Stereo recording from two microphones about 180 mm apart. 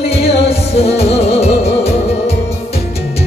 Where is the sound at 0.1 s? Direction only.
35° left (ahead or behind).